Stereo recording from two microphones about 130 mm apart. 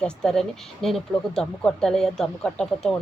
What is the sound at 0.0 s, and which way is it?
Speech, 5° left (ahead or behind).